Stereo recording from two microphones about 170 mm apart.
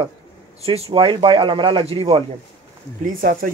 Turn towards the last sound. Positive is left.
turn(degrees=-50)  # may be behind; listen again after turning